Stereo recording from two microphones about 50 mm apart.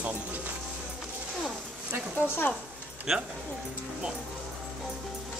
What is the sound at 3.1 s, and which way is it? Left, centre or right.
Speech, centre.